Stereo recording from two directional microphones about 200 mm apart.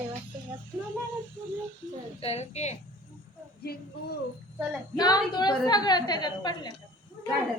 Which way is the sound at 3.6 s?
50° left (ahead or behind).